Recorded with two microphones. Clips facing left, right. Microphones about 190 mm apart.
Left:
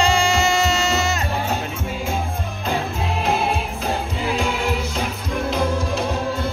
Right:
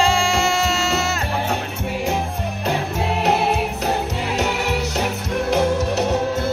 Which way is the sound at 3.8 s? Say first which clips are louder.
Left 2 dB; 75° right (ahead or behind).